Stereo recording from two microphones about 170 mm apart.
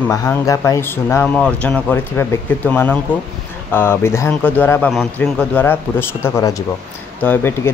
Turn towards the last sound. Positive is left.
turn(degrees=15)  # may be behind; listen again after turning